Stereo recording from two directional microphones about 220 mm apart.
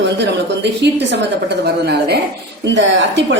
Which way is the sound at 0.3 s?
50° right (ahead or behind).